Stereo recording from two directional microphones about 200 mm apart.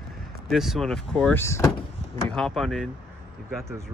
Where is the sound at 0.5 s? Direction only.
Centre (ahead or behind).